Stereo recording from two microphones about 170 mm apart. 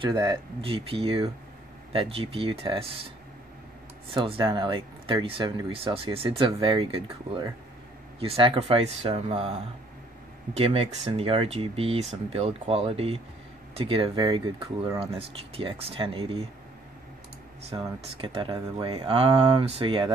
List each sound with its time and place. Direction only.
0.0 s speech: 25° right (ahead or behind)
4.1 s speech: 30° right (ahead or behind)
10.5 s speech: 35° right (ahead or behind)
17.7 s speech: 25° right (ahead or behind)